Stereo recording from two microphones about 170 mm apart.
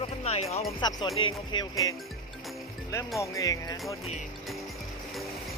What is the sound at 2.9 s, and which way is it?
Speech, 20° left (ahead or behind).